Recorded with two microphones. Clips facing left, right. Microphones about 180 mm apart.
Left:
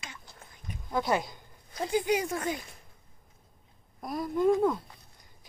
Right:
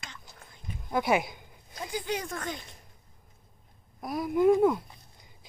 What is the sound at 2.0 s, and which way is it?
Speech, 10° left (ahead or behind).